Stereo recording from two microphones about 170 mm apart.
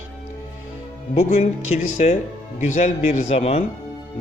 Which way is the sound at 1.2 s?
45° left (ahead or behind).